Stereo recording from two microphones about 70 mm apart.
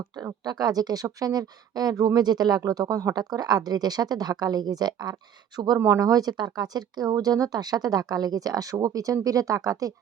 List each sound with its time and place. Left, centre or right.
0.4 s speech: right
5.8 s speech: right